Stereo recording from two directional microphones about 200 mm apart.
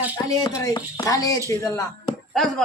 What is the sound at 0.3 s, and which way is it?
Speech, 15° left (ahead or behind).